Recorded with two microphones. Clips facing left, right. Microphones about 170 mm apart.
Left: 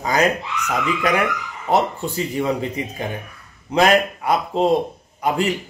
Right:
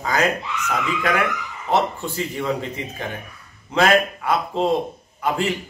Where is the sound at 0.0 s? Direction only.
15° left (ahead or behind).